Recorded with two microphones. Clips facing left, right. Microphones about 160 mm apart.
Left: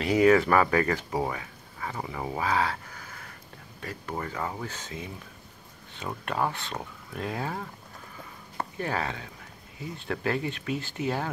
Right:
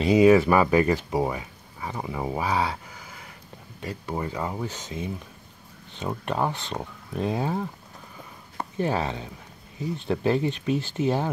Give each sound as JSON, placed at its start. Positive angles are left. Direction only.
{"t": 0.0, "sound": "speech", "side_deg": -15}